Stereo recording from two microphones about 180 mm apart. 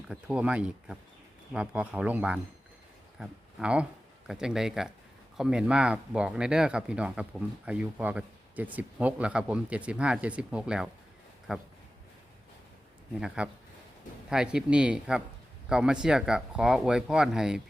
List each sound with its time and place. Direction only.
0.1 s speech: 5° right (ahead or behind)
13.1 s speech: 5° right (ahead or behind)